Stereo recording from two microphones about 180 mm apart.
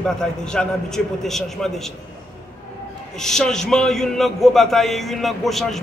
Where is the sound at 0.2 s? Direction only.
5° left (ahead or behind).